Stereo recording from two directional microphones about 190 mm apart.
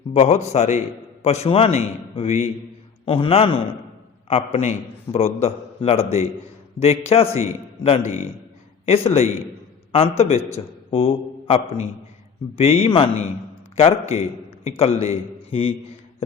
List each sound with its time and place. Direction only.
0.1 s a man's voice: 35° left (ahead or behind)
9.9 s a man's voice: 30° left (ahead or behind)